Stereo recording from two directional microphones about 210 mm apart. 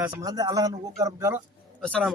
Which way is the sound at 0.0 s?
15° right (ahead or behind).